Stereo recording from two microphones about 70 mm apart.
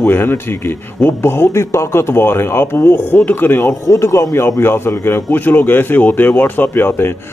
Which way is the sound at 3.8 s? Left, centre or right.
Left.